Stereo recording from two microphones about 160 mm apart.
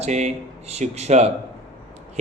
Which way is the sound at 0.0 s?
45° right (ahead or behind).